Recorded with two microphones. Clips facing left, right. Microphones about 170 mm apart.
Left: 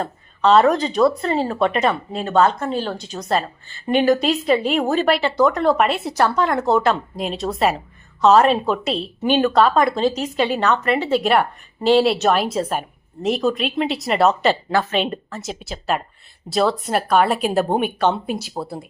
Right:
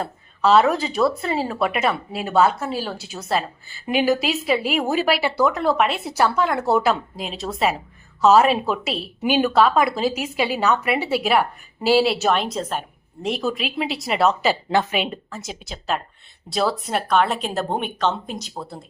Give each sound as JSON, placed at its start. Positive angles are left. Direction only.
{"t": 0.0, "sound": "a woman's voice", "side_deg": -5}
{"t": 14.7, "sound": "a woman's voice", "side_deg": -20}
{"t": 14.9, "sound": "a woman's voice", "side_deg": 0}